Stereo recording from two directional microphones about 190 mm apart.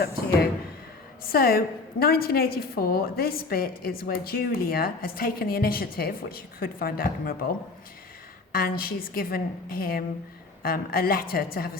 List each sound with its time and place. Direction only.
1.2 s a woman's voice: 50° left (ahead or behind)
8.5 s a woman's voice: 50° left (ahead or behind)